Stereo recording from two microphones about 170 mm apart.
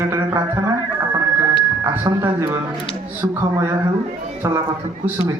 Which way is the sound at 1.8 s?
20° right (ahead or behind).